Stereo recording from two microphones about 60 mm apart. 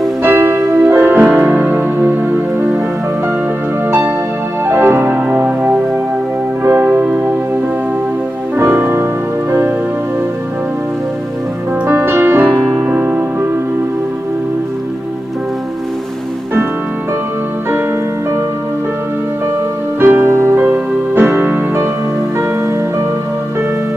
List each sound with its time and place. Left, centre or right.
0.2 s music: right
4.7 s music: right
6.6 s music: right
11.9 s music: right
12.8 s music: right
20.0 s music: right